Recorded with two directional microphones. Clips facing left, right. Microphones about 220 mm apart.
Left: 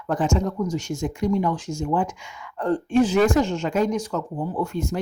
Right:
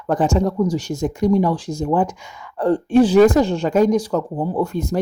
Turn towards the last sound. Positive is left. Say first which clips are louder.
# right 5 dB
turn(degrees=-40)  # may be behind; listen again after turning